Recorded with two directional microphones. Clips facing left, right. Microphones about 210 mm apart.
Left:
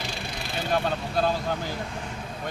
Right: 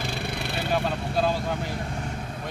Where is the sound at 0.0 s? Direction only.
60° right (ahead or behind).